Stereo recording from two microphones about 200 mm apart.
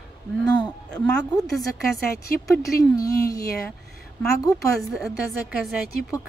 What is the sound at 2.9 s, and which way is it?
Speech, 15° left (ahead or behind).